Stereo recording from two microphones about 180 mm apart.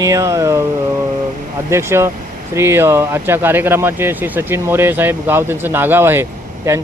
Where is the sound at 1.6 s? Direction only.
15° right (ahead or behind).